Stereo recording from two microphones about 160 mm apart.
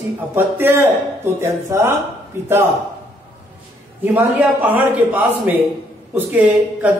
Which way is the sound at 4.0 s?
10° right (ahead or behind).